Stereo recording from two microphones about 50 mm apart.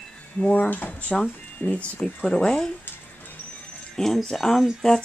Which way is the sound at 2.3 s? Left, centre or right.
Centre.